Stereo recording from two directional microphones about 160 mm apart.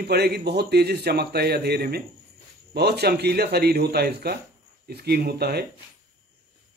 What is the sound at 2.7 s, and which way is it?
A man's voice, 90° right.